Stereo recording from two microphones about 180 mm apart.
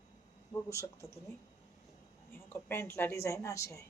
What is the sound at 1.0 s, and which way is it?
Speech, 15° left (ahead or behind).